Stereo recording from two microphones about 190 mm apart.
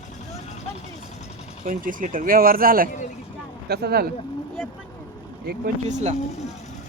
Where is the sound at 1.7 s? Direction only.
45° right (ahead or behind).